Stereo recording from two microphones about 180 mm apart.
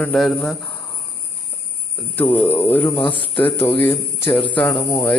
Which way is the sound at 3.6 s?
10° left (ahead or behind).